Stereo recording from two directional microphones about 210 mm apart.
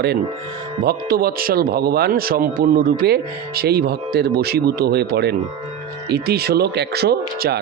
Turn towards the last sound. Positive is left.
turn(degrees=-50)  # may be behind; listen again after turning